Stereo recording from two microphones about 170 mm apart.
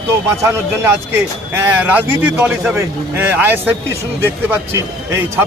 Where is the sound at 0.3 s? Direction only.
15° right (ahead or behind).